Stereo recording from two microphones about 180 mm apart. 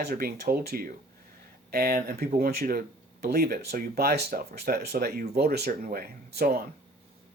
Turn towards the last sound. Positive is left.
turn(degrees=-60)  # may be behind; listen again after turning